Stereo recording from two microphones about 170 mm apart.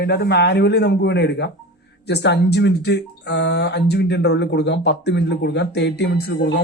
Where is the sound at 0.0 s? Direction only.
75° left (ahead or behind).